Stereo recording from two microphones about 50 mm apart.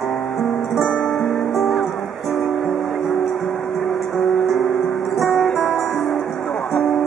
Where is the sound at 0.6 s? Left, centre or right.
Centre.